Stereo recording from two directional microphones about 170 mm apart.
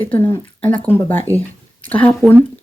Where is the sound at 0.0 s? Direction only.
10° left (ahead or behind).